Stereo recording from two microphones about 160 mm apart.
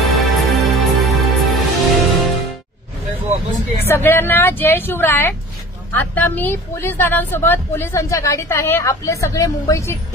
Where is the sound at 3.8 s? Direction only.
15° left (ahead or behind).